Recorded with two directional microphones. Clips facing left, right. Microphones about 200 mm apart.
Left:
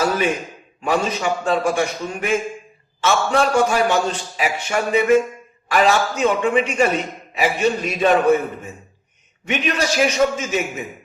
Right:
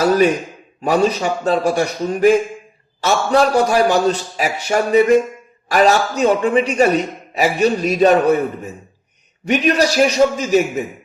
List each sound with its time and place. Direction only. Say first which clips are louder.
0.8 s a man's voice: right 5 dB; 40° right (ahead or behind)